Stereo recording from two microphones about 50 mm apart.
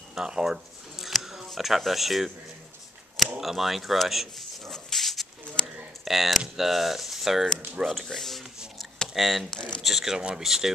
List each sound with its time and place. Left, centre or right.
0.1 s speech: centre
1.1 s music: centre
1.8 s speech: centre
3.3 s speech: centre
4.6 s dog: centre
6.0 s speech: centre
9.5 s speech: centre
9.8 s speech: centre